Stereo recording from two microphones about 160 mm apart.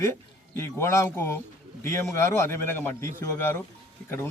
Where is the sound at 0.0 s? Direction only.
15° left (ahead or behind).